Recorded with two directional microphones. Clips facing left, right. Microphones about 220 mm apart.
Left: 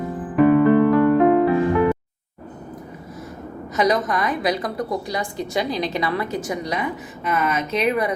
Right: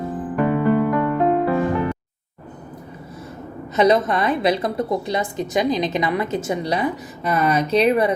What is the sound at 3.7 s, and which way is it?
A woman's voice, 25° right (ahead or behind).